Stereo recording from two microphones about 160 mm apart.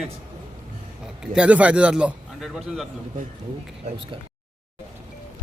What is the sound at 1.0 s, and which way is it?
A man's voice, 5° right (ahead or behind).